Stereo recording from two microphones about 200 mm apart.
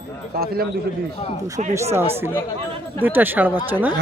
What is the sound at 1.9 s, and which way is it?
Speech, 10° right (ahead or behind).